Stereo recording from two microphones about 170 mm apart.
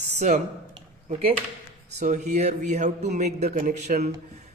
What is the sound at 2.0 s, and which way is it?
Speech, 45° right (ahead or behind).